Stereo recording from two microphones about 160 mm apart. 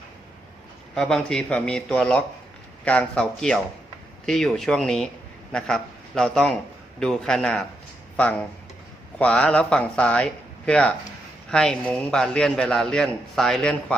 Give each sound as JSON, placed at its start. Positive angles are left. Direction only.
{"t": 0.9, "sound": "a man's voice", "side_deg": 5}